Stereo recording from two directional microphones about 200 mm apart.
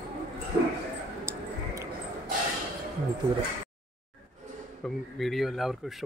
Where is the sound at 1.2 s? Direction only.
15° right (ahead or behind).